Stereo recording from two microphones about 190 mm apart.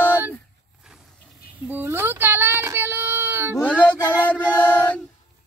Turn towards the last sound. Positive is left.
turn(degrees=10)  # may be behind; listen again after turning